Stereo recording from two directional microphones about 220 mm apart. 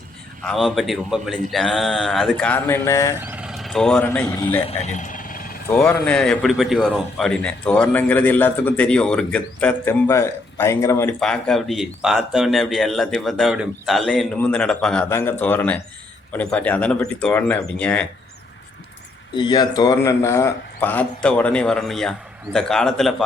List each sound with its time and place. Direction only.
0.4 s speech: centre (ahead or behind)
3.2 s speech: 10° right (ahead or behind); by 4.6 s 10° left (ahead or behind)
4.7 s vehicle: 30° left (ahead or behind)
5.7 s a man's voice: 5° left (ahead or behind)
19.3 s a man's voice: 20° left (ahead or behind); by 23.2 s centre (ahead or behind)